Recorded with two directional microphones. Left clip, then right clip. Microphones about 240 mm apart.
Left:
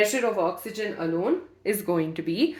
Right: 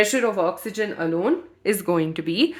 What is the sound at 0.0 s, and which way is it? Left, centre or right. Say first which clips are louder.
Speech: right 3 dB; right.